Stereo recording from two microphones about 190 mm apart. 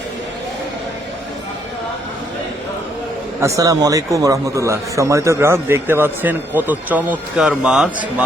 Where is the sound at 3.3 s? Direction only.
15° right (ahead or behind).